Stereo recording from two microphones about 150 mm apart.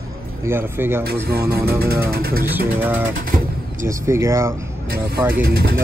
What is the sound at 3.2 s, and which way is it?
Bird, 70° right (ahead or behind).